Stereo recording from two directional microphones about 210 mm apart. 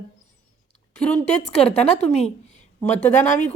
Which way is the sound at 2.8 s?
10° left (ahead or behind).